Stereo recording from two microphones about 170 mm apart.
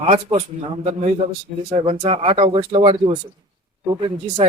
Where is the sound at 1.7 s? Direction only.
35° right (ahead or behind).